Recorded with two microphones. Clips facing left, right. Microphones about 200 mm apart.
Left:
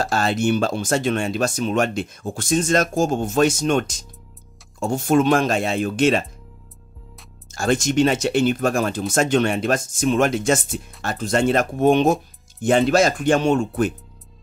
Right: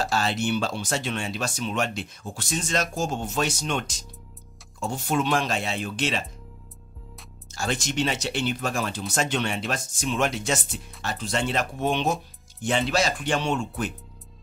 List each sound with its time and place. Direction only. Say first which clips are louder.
0.0 s speech: left 5 dB; 50° left (ahead or behind)
7.5 s speech: left 9 dB; 50° left (ahead or behind)